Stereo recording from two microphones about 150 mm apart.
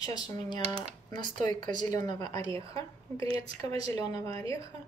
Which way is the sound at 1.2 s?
55° right (ahead or behind).